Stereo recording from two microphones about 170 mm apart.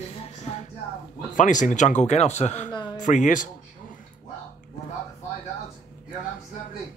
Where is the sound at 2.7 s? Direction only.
25° left (ahead or behind).